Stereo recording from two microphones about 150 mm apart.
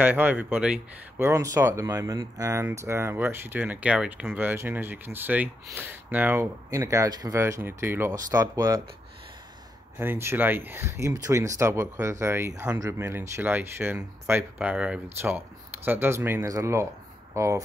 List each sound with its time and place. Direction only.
0.0 s speech: 10° right (ahead or behind)
9.9 s speech: 15° right (ahead or behind)